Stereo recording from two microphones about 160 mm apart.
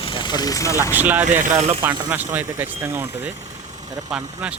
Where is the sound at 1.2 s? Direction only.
50° right (ahead or behind).